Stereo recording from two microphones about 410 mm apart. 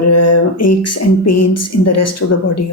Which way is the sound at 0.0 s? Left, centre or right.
Left.